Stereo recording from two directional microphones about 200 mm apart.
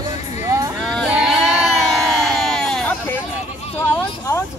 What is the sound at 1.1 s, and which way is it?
Sheep, centre (ahead or behind).